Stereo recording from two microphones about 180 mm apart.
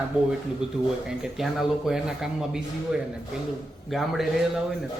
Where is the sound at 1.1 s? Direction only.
Centre (ahead or behind).